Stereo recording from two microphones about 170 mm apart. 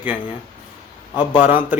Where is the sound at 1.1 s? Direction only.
25° left (ahead or behind).